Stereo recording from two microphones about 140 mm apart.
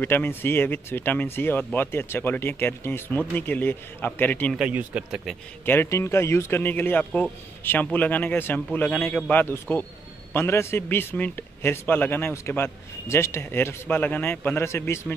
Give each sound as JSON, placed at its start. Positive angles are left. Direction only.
{"t": 0.0, "sound": "a man's voice", "side_deg": 15}
{"t": 4.6, "sound": "speech", "side_deg": -10}
{"t": 5.7, "sound": "a man's voice", "side_deg": 15}